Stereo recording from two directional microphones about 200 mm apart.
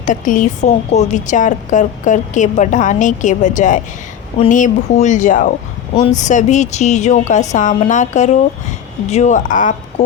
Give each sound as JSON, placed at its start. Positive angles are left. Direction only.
{"t": 0.0, "sound": "speech", "side_deg": 40}